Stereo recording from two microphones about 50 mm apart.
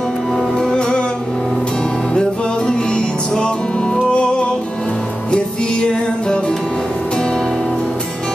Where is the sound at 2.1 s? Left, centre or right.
Centre.